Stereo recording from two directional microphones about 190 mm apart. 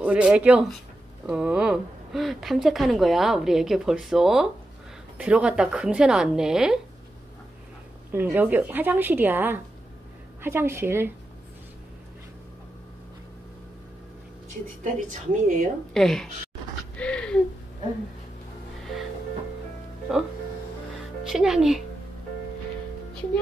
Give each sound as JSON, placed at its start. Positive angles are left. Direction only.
{"t": 0.0, "sound": "speech", "side_deg": -5}
{"t": 8.1, "sound": "a woman's voice", "side_deg": -10}
{"t": 14.8, "sound": "a woman's voice", "side_deg": -45}
{"t": 15.9, "sound": "speech", "side_deg": 0}
{"t": 17.0, "sound": "a sound", "side_deg": 5}
{"t": 20.1, "sound": "speech", "side_deg": -5}